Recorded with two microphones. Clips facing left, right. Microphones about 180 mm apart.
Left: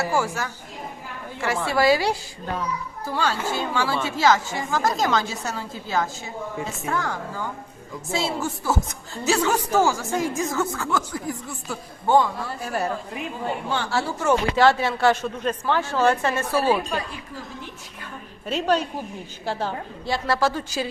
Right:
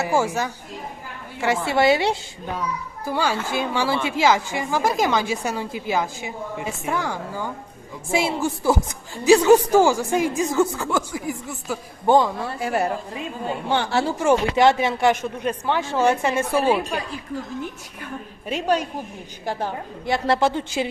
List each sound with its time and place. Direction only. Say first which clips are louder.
0.0 s a woman's voice: right 3 dB; 20° right (ahead or behind)
3.1 s speech: right 2 dB; 10° right (ahead or behind)
12.5 s a woman's voice: right 5 dB; 80° right
13.7 s speech: right 6 dB; 20° right (ahead or behind)
18.0 s a woman's voice: right 4 dB; 10° right (ahead or behind)